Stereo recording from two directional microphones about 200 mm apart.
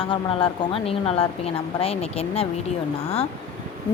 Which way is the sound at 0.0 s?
25° left (ahead or behind).